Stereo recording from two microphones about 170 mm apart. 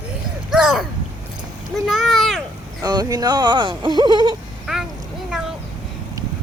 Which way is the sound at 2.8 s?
20° right (ahead or behind).